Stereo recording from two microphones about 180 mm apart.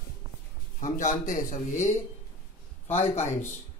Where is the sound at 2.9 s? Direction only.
35° left (ahead or behind).